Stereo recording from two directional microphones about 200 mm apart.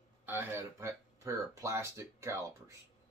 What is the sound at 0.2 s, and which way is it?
Speech, 10° right (ahead or behind).